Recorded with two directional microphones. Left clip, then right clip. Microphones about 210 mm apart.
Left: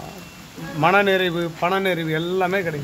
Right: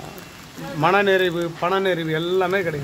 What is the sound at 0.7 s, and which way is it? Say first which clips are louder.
Speech: even; 15° left (ahead or behind).